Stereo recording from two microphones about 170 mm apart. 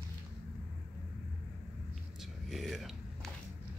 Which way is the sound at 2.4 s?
Centre (ahead or behind).